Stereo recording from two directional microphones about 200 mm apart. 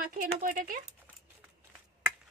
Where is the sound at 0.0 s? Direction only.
45° right (ahead or behind).